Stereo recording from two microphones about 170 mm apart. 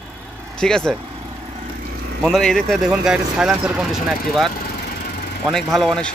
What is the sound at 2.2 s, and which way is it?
Speech, centre (ahead or behind).